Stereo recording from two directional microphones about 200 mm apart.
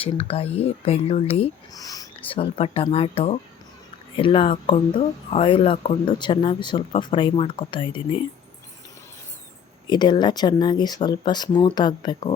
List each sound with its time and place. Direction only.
0.0 s speech: 30° left (ahead or behind)
1.7 s speech: 20° left (ahead or behind)
9.8 s speech: 20° left (ahead or behind)